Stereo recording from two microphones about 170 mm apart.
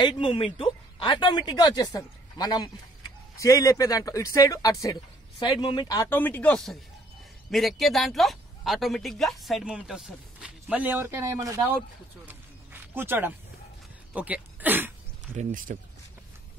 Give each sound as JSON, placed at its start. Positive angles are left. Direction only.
{"t": 0.2, "sound": "speech", "side_deg": 30}
{"t": 12.3, "sound": "a sound", "side_deg": -10}
{"t": 14.1, "sound": "speech", "side_deg": -10}
{"t": 15.3, "sound": "speech", "side_deg": -50}